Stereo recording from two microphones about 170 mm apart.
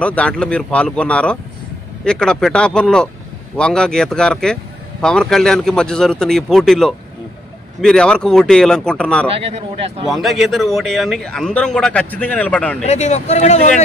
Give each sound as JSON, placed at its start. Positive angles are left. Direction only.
{"t": 0.0, "sound": "a man's voice", "side_deg": 5}
{"t": 12.8, "sound": "speech", "side_deg": 40}